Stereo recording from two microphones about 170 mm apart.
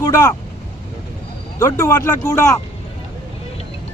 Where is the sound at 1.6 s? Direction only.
15° left (ahead or behind).